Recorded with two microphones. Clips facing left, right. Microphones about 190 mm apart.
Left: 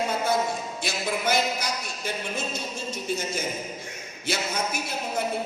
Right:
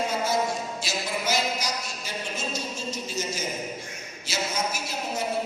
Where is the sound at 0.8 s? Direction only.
55° left (ahead or behind).